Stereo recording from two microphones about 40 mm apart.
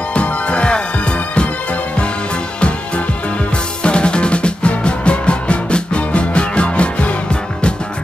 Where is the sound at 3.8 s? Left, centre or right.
Left.